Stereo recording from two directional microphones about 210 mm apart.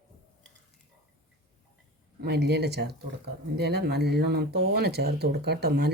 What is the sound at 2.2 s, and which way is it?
Speech, 55° right (ahead or behind).